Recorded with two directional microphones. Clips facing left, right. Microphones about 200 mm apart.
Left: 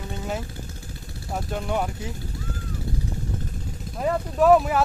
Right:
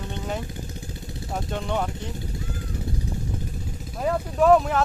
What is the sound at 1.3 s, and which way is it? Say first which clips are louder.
Speech: left 1 dB; 5° left (ahead or behind).